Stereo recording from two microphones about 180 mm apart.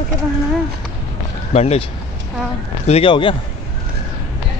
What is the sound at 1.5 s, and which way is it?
Speech, 35° left (ahead or behind).